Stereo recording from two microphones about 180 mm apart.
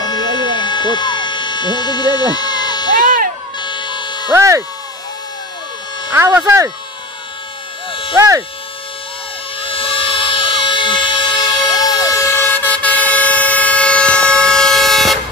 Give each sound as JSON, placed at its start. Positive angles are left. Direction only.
{"t": 0.0, "sound": "a sound", "side_deg": 20}
{"t": 3.5, "sound": "emergency vehicle", "side_deg": 25}
{"t": 4.3, "sound": "speech", "side_deg": -15}
{"t": 6.1, "sound": "speech", "side_deg": -15}
{"t": 8.2, "sound": "speech", "side_deg": -15}
{"t": 9.6, "sound": "siren", "side_deg": 30}